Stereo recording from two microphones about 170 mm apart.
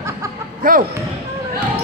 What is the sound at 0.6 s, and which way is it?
Speech, 55° right (ahead or behind).